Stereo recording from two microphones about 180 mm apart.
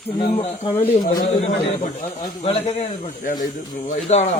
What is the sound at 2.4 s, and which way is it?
Speech, 35° left (ahead or behind).